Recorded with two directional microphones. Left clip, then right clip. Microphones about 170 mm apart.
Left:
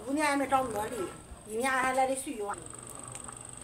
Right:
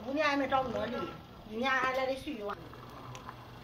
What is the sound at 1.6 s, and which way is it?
Speech, 55° left (ahead or behind).